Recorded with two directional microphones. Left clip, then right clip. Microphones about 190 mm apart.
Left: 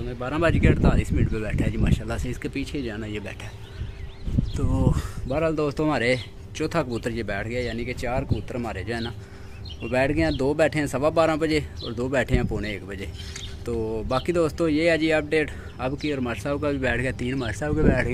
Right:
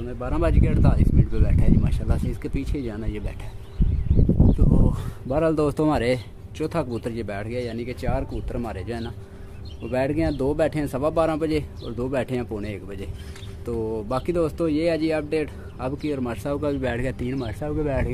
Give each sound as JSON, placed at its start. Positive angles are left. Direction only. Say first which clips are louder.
{"t": 0.2, "sound": "speech", "louder": "left 2 dB", "side_deg": 0}
{"t": 4.9, "sound": "speech", "louder": "right 2 dB", "side_deg": -20}
{"t": 5.5, "sound": "speech", "louder": "right 2 dB", "side_deg": -30}
{"t": 6.6, "sound": "speech", "louder": "left 1 dB", "side_deg": -5}